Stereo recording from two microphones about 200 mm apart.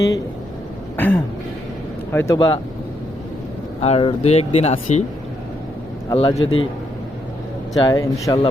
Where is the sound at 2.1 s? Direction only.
15° left (ahead or behind).